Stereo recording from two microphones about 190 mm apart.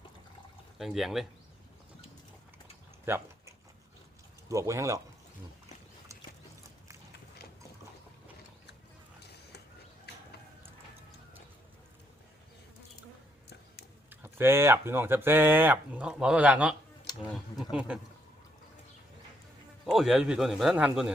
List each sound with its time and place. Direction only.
0.8 s speech: centre (ahead or behind)
3.1 s a sound: 15° right (ahead or behind)
4.4 s speech: 15° right (ahead or behind)
14.1 s speech: 10° right (ahead or behind)
19.8 s speech: centre (ahead or behind)